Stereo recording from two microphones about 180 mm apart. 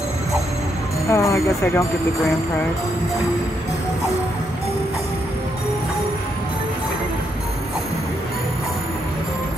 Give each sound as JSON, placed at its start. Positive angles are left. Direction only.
{"t": 1.1, "sound": "speech", "side_deg": 15}